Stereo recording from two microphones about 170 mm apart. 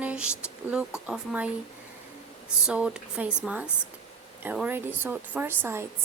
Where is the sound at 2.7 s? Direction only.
5° right (ahead or behind).